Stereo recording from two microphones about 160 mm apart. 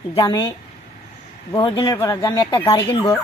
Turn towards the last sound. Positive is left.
turn(degrees=35)  # may be behind; listen again after turning